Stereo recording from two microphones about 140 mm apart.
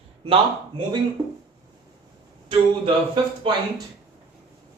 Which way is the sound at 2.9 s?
35° right (ahead or behind).